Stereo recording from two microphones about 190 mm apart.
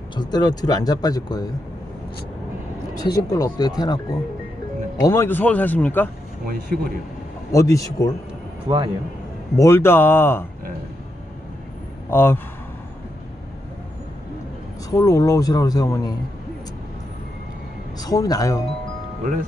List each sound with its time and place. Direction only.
0.1 s speech: 20° left (ahead or behind)
2.9 s speech: 20° left (ahead or behind)
5.0 s speech: 15° left (ahead or behind)
6.4 s speech: 55° right (ahead or behind)
7.5 s speech: 15° left (ahead or behind)
8.6 s a man's voice: 25° right (ahead or behind)
9.6 s speech: 15° left (ahead or behind)
12.1 s a man's voice: 10° left (ahead or behind)
14.9 s speech: 20° left (ahead or behind)
17.9 s speech: 20° left (ahead or behind)